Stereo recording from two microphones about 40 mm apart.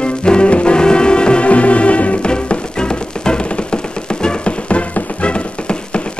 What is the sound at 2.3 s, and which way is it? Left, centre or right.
Music, left.